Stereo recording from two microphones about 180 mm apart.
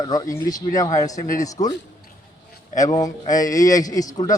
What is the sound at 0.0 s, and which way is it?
A man's voice, 20° left (ahead or behind).